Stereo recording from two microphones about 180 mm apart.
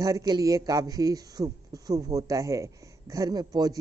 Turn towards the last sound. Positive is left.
turn(degrees=-20)  # may be behind; listen again after turning